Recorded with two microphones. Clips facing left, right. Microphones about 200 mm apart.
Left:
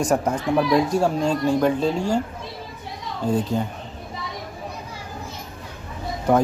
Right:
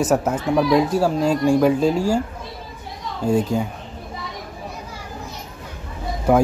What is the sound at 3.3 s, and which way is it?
Speech, 10° right (ahead or behind).